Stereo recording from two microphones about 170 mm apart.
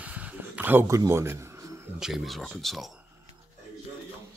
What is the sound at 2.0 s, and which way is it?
Speech, centre (ahead or behind).